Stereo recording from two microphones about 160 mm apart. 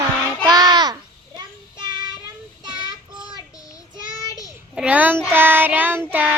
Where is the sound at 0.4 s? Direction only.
25° right (ahead or behind).